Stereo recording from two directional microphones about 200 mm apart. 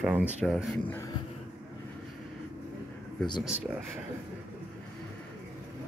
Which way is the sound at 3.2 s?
20° left (ahead or behind).